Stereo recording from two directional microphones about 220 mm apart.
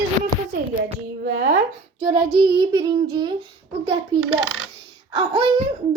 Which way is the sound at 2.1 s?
20° right (ahead or behind).